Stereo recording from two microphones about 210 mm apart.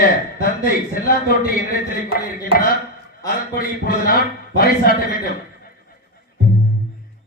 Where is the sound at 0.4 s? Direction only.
45° left (ahead or behind).